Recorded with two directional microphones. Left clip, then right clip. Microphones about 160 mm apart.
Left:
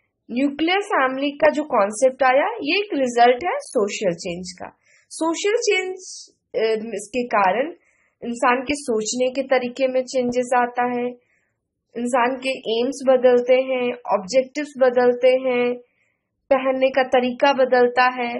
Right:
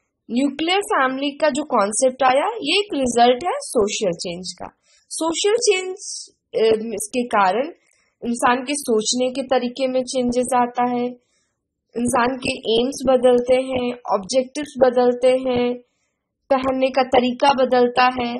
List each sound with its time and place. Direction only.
0.3 s a woman's voice: 35° right (ahead or behind)
8.8 s a woman's voice: 25° right (ahead or behind)